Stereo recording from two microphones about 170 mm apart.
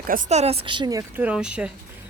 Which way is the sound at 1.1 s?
10° right (ahead or behind).